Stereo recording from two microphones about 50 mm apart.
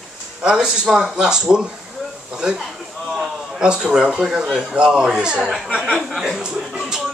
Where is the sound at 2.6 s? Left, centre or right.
Centre.